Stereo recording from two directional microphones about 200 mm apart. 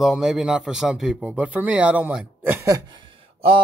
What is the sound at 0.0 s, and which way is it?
Speech, centre (ahead or behind).